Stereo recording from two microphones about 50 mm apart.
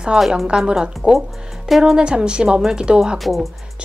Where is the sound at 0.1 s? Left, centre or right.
Centre.